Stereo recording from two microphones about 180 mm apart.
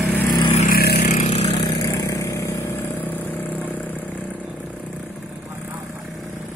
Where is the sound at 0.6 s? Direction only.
55° left (ahead or behind).